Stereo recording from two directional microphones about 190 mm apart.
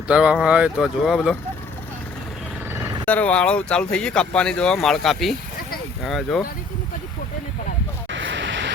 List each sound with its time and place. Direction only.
0.1 s speech: 5° right (ahead or behind)
3.1 s speech: 5° left (ahead or behind)
8.1 s vehicle: 70° right (ahead or behind)